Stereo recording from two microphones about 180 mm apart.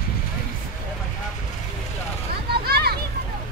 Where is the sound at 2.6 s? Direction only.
60° right (ahead or behind).